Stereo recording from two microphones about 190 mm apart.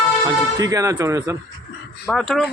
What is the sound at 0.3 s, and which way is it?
Speech, 20° right (ahead or behind).